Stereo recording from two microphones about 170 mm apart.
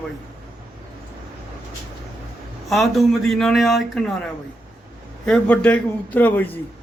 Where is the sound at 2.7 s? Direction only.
Centre (ahead or behind).